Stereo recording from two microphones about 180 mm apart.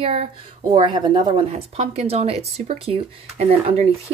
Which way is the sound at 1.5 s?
35° right (ahead or behind).